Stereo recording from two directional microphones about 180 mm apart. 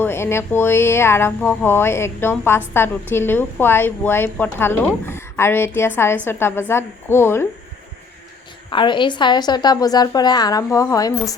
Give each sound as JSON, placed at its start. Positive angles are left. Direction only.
{"t": 0.0, "sound": "a woman's voice", "side_deg": 15}
{"t": 8.7, "sound": "a woman's voice", "side_deg": 25}